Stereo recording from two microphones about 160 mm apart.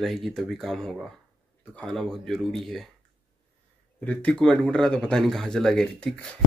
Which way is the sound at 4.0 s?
10° left (ahead or behind).